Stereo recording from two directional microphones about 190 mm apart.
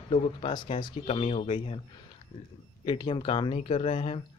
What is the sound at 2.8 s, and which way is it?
Speech, 25° left (ahead or behind).